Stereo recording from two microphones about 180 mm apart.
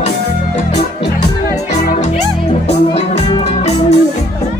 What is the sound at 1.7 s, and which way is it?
Music, 40° left (ahead or behind).